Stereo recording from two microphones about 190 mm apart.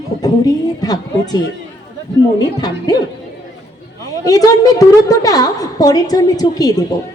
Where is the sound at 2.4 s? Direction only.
20° left (ahead or behind).